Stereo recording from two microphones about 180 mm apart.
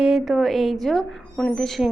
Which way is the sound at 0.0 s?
Centre (ahead or behind).